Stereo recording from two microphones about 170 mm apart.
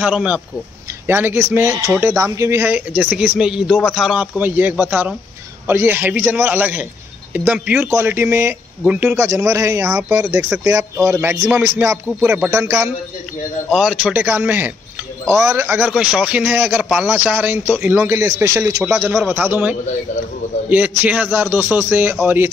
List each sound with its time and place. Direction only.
0.0 s a man's voice: 5° right (ahead or behind)
13.7 s a man's voice: 5° right (ahead or behind)
20.7 s a man's voice: 10° right (ahead or behind)